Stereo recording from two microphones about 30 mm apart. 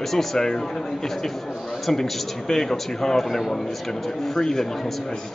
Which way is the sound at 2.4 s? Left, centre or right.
Centre.